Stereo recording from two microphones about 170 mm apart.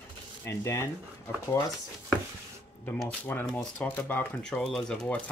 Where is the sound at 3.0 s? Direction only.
10° left (ahead or behind).